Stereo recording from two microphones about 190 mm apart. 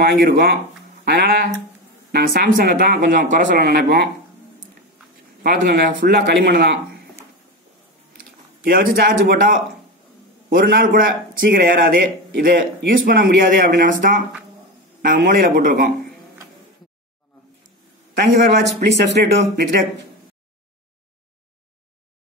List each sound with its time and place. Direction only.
0.0 s speech: 60° right (ahead or behind)
5.7 s speech: 50° right (ahead or behind)
6.1 s speech: 65° right (ahead or behind)
8.6 s speech: 55° right (ahead or behind)
18.3 s a man's voice: 35° right (ahead or behind)
18.8 s speech: 60° right (ahead or behind)